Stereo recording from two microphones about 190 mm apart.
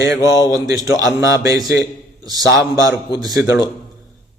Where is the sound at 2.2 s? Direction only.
20° right (ahead or behind).